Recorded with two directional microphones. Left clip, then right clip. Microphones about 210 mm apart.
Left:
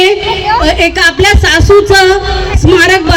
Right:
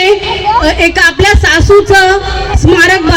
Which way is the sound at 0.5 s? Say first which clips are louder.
Right 1 dB; 30° left (ahead or behind).